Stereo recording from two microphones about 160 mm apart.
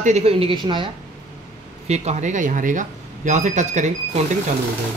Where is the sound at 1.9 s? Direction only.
45° right (ahead or behind).